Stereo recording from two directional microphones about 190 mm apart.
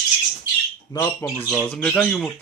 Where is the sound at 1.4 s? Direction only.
5° left (ahead or behind).